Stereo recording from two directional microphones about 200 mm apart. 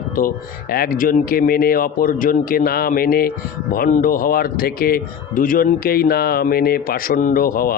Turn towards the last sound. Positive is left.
turn(degrees=45)  # may be behind; listen again after turning